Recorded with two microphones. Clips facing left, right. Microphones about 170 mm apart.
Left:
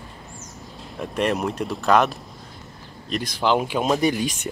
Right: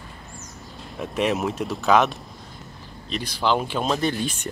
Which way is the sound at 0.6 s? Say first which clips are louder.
Even; centre (ahead or behind).